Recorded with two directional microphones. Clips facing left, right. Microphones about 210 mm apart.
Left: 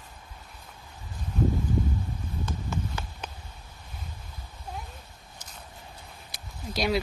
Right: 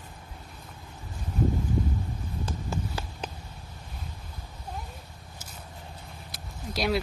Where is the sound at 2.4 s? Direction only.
35° right (ahead or behind).